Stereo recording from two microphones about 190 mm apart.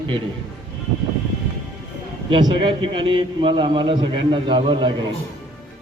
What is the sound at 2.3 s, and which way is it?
A man's voice, 25° right (ahead or behind).